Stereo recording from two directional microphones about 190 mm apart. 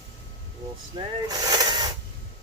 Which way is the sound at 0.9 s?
20° right (ahead or behind).